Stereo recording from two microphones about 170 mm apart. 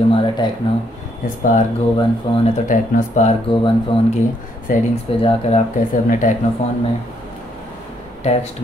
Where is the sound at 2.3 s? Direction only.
35° left (ahead or behind).